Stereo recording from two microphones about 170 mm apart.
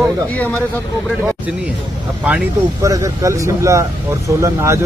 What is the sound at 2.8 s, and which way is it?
Speech, 20° right (ahead or behind).